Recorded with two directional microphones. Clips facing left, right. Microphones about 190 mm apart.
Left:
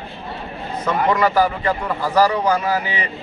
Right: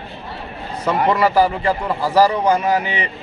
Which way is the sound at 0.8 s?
30° right (ahead or behind).